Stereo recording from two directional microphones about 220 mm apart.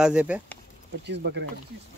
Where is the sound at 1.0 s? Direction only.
50° right (ahead or behind).